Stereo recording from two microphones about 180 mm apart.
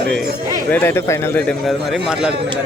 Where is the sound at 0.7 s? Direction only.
10° left (ahead or behind).